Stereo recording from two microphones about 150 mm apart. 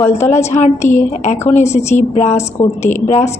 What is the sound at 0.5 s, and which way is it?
A woman's voice, 50° left (ahead or behind).